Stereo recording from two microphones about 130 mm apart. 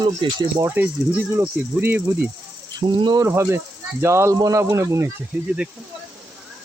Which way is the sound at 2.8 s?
35° right (ahead or behind).